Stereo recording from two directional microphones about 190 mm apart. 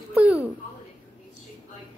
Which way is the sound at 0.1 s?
10° right (ahead or behind).